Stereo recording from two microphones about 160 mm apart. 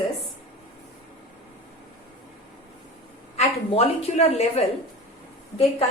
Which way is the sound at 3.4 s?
40° left (ahead or behind).